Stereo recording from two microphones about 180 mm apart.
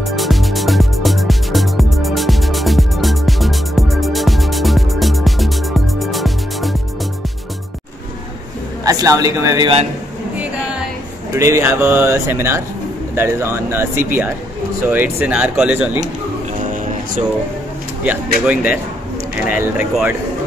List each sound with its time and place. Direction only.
0.0 s music: centre (ahead or behind)
8.8 s speech: 20° right (ahead or behind)
11.3 s speech: 15° right (ahead or behind)
18.5 s speech: 10° right (ahead or behind)